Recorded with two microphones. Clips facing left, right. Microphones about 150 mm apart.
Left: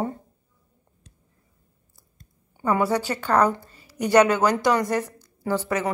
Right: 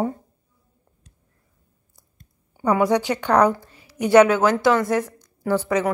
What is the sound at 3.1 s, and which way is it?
Speech, 10° right (ahead or behind).